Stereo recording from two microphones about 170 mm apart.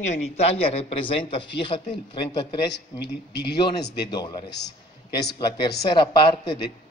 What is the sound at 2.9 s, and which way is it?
Speech, 75° left (ahead or behind).